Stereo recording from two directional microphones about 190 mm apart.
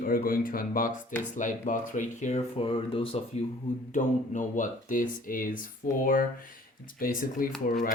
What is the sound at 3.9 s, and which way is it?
Speech, 40° left (ahead or behind).